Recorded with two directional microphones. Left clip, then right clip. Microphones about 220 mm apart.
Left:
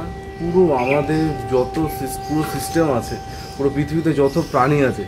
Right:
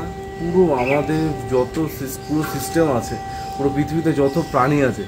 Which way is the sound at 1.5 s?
5° left (ahead or behind).